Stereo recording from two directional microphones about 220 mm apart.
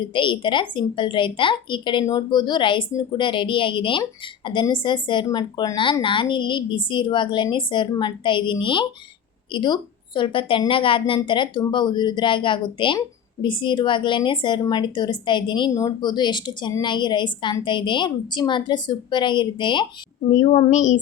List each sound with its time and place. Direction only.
0.0 s a woman's voice: 20° left (ahead or behind)
20.3 s a child's voice: 30° left (ahead or behind)